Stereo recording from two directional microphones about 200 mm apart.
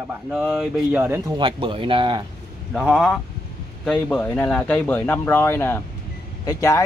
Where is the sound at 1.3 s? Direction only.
25° right (ahead or behind).